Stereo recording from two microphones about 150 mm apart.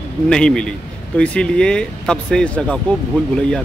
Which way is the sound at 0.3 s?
5° left (ahead or behind).